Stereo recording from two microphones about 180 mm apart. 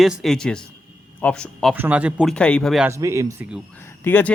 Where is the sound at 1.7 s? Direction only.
10° right (ahead or behind).